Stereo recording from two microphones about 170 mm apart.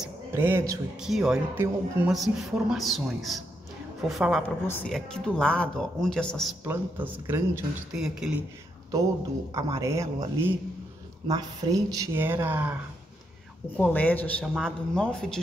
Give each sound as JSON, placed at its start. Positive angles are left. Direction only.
{"t": 0.3, "sound": "speech", "side_deg": -15}
{"t": 1.0, "sound": "speech", "side_deg": -5}
{"t": 6.6, "sound": "speech", "side_deg": -10}
{"t": 9.5, "sound": "speech", "side_deg": -20}
{"t": 13.7, "sound": "speech", "side_deg": 10}